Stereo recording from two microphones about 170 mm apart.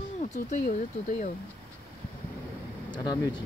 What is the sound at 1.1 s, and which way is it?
Speech, 45° left (ahead or behind).